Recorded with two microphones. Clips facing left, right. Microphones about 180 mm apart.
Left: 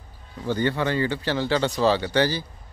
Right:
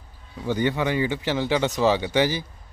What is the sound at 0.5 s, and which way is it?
A man's voice, 15° right (ahead or behind).